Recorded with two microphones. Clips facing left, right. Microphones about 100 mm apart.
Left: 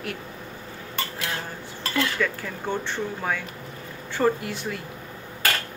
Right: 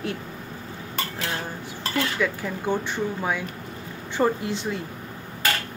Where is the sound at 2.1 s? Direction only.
15° right (ahead or behind).